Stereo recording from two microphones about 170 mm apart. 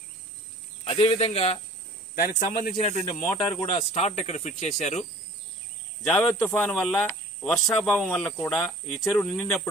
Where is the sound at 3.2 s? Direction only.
20° left (ahead or behind).